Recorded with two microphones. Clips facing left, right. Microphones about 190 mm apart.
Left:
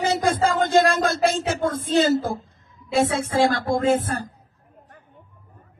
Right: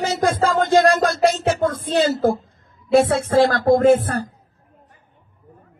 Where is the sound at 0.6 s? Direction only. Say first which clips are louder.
Right 5 dB; 50° right (ahead or behind).